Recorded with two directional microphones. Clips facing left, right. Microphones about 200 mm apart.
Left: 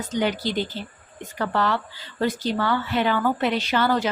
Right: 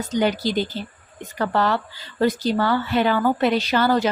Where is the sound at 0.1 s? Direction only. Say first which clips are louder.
Right 3 dB; 40° right (ahead or behind).